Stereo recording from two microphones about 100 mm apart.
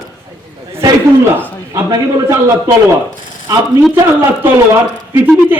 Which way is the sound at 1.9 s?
40° right (ahead or behind).